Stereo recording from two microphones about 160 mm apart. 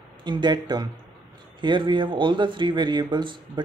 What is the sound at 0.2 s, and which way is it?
Speech, 30° right (ahead or behind).